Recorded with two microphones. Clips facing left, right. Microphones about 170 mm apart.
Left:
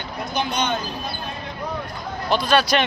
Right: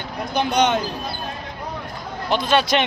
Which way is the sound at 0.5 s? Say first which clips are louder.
Right 8 dB; 85° right.